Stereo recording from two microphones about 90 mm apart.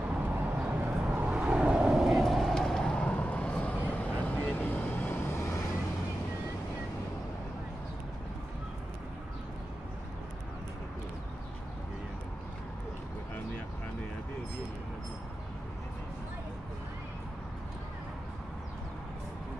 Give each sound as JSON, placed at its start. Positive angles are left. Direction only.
{"t": 0.1, "sound": "vehicle", "side_deg": -15}